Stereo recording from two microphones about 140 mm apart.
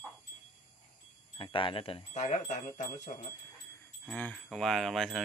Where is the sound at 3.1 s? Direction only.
65° left (ahead or behind).